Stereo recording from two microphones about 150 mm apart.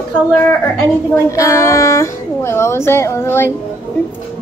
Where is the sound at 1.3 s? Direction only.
20° left (ahead or behind).